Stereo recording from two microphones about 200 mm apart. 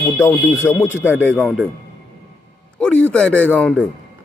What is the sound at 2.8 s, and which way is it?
A man's voice, 5° left (ahead or behind).